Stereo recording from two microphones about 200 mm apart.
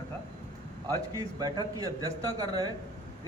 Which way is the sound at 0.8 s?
20° right (ahead or behind).